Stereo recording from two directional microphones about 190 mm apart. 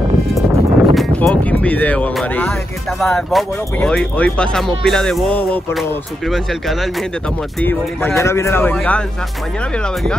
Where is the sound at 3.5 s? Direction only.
15° left (ahead or behind).